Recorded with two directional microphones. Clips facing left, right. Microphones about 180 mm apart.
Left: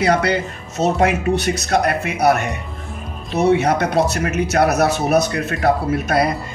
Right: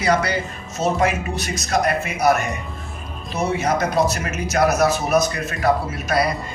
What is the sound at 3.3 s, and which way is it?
Speech, 65° left (ahead or behind).